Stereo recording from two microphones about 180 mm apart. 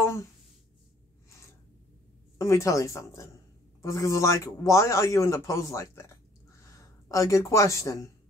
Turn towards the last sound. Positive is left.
turn(degrees=15)  # may be behind; listen again after turning